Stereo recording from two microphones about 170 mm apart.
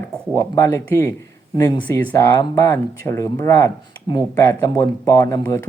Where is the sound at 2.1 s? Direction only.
15° left (ahead or behind).